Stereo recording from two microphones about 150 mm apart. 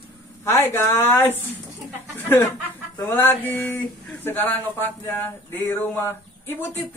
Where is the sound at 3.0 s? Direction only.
15° left (ahead or behind).